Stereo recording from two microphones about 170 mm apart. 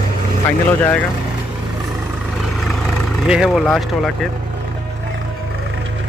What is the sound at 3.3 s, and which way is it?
Speech, 5° right (ahead or behind).